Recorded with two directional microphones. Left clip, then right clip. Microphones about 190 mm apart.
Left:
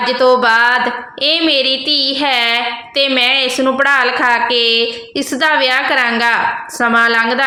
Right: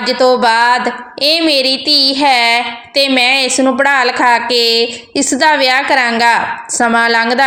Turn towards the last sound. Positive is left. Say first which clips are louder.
# right 1 dB
turn(degrees=-20)  # may be behind; listen again after turning